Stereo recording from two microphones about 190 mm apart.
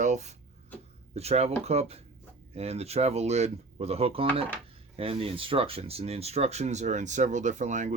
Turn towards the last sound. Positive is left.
turn(degrees=-40)  # may be behind; listen again after turning